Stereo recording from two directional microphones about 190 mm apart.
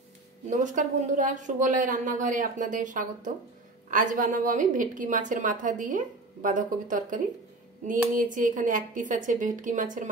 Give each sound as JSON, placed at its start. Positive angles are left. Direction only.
{"t": 0.5, "sound": "a woman's voice", "side_deg": -40}